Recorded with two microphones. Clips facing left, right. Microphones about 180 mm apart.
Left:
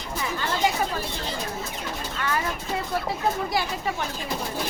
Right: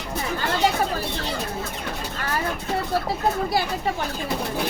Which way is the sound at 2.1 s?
40° right (ahead or behind).